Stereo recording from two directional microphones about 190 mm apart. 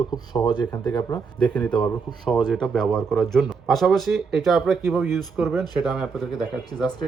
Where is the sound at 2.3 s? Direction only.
Centre (ahead or behind).